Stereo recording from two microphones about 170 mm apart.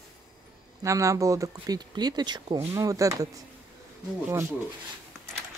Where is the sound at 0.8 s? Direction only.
20° right (ahead or behind).